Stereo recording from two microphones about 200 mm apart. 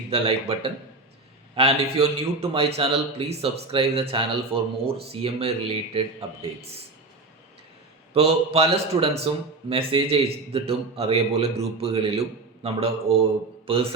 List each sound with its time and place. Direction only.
0.1 s a man's voice: 30° right (ahead or behind)
8.1 s a man's voice: 30° right (ahead or behind)